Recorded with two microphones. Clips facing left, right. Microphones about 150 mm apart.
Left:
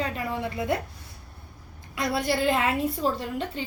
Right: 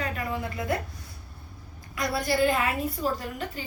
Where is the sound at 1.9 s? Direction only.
25° left (ahead or behind).